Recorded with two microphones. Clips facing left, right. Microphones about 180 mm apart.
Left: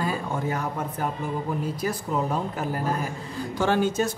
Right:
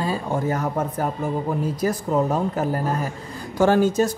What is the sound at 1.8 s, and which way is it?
Speech, 40° right (ahead or behind).